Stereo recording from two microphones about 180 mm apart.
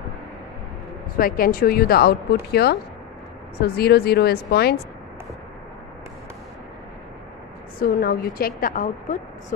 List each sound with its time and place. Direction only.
1.1 s speech: 55° left (ahead or behind)
7.8 s speech: 60° left (ahead or behind)